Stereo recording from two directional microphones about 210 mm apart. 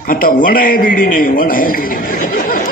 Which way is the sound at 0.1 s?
40° left (ahead or behind).